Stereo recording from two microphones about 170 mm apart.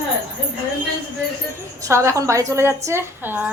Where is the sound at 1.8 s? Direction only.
15° right (ahead or behind).